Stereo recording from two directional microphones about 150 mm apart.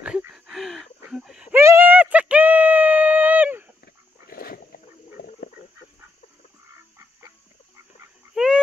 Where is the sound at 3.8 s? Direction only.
85° left.